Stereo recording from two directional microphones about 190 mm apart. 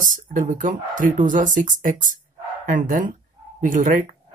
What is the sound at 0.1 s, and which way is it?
Speech, 40° right (ahead or behind).